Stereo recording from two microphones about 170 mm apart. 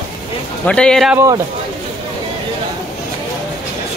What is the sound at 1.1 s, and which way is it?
Speech, 20° right (ahead or behind).